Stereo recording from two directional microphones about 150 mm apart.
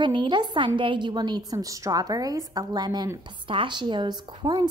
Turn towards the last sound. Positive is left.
turn(degrees=-30)  # may be behind; listen again after turning